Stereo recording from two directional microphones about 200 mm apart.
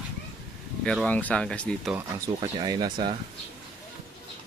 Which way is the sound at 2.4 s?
20° right (ahead or behind).